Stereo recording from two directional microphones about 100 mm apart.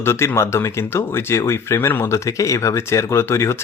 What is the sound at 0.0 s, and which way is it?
Speech, 25° left (ahead or behind).